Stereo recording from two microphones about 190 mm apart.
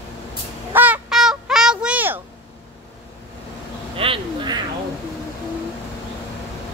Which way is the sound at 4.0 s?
30° right (ahead or behind).